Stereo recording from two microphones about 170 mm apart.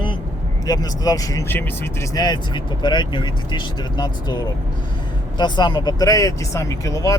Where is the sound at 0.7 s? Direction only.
20° left (ahead or behind).